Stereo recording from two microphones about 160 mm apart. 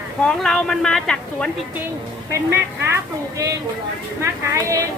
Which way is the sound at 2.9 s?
20° right (ahead or behind).